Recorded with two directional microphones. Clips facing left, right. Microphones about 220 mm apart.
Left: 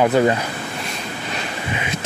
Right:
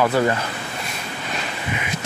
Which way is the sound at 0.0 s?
20° left (ahead or behind).